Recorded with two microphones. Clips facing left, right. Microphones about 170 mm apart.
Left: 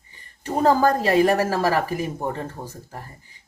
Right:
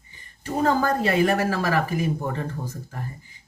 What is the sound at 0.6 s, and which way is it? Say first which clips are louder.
Speech: left 4 dB; 40° left (ahead or behind).